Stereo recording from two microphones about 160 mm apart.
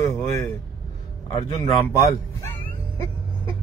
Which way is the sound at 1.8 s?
20° left (ahead or behind).